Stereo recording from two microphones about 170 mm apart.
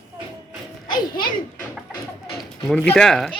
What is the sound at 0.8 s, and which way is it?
Children playing, 25° left (ahead or behind).